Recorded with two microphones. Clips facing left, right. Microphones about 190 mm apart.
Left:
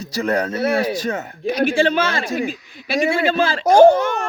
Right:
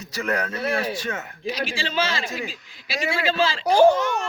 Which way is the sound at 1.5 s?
55° left (ahead or behind).